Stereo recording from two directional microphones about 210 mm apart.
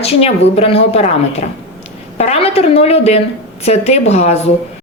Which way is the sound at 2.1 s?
30° left (ahead or behind).